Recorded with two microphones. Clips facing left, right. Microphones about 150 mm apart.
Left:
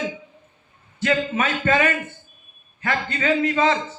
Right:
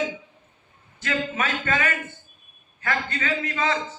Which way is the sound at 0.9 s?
30° left (ahead or behind).